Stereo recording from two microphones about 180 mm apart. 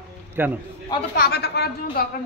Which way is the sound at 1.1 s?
60° left (ahead or behind).